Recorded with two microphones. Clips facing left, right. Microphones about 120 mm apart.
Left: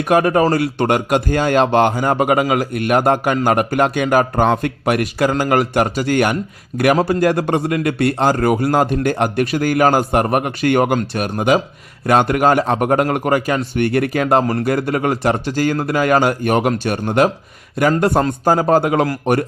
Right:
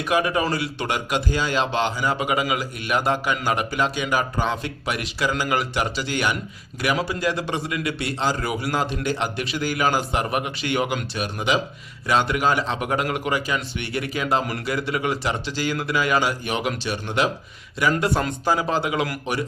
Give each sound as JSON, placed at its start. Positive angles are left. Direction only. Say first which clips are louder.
{"t": 0.0, "sound": "a man's voice", "louder": "left 8 dB", "side_deg": 50}